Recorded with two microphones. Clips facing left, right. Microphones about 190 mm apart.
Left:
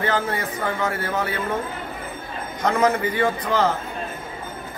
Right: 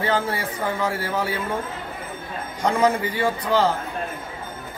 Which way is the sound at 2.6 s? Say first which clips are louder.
Even; 10° right (ahead or behind).